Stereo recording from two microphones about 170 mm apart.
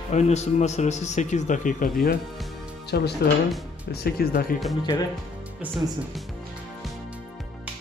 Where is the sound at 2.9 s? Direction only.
70° left (ahead or behind).